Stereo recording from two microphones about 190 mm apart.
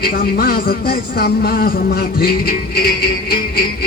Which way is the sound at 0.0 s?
50° left (ahead or behind).